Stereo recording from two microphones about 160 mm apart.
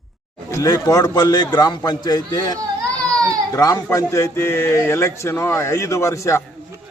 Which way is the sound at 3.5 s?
20° left (ahead or behind).